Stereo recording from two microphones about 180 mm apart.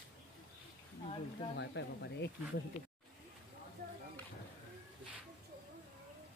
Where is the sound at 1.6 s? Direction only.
75° left (ahead or behind).